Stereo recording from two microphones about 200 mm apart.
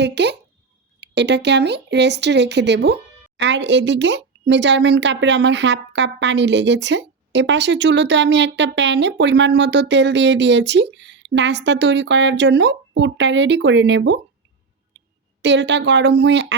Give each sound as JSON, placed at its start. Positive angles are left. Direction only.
{"t": 0.0, "sound": "speech", "side_deg": -60}